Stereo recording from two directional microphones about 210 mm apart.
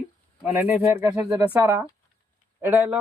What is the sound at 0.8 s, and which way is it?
Speech, 10° right (ahead or behind).